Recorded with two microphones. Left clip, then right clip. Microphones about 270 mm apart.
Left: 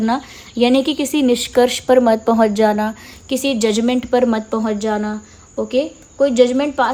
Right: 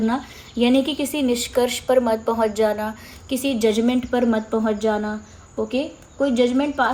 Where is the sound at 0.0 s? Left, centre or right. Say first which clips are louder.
Left 4 dB; left.